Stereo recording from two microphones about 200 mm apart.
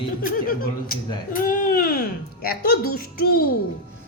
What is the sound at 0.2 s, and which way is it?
Speech, 45° left (ahead or behind).